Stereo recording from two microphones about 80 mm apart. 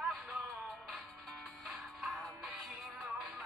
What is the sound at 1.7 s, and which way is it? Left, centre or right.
Music, centre.